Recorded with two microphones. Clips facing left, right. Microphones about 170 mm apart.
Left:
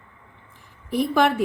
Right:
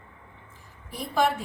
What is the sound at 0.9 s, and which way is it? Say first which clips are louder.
Speech: left 6 dB; 80° left.